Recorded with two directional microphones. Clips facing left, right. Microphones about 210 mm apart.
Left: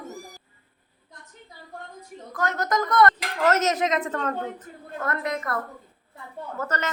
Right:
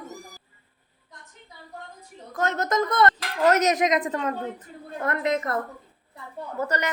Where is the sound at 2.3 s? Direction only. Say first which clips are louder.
Right 1 dB; 25° right (ahead or behind).